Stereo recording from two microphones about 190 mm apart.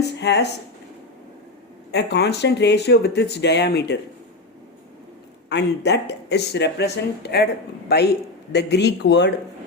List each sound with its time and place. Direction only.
0.0 s speech: 60° left (ahead or behind)
1.9 s speech: 60° left (ahead or behind)
5.5 s speech: 65° left (ahead or behind)